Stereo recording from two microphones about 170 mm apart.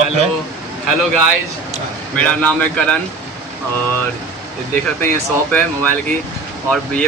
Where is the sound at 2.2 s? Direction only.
10° left (ahead or behind).